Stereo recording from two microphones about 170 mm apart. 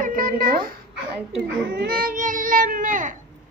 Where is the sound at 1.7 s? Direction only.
65° right (ahead or behind); by 3.1 s 50° right (ahead or behind).